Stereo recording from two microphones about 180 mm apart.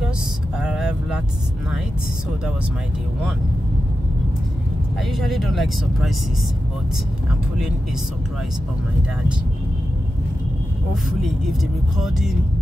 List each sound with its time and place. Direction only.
0.6 s vehicle: 5° right (ahead or behind)
5.1 s speech: centre (ahead or behind)